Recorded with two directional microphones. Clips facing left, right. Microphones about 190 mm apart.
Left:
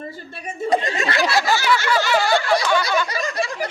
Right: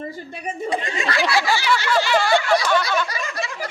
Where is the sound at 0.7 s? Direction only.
40° left (ahead or behind).